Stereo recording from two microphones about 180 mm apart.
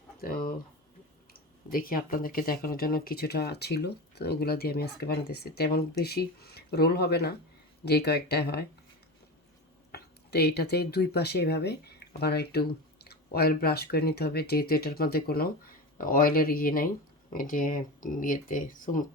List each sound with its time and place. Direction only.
0.2 s a sound: 55° left (ahead or behind)
1.3 s speech: 55° left (ahead or behind)
9.9 s speech: 65° left (ahead or behind); by 19.0 s 45° left (ahead or behind)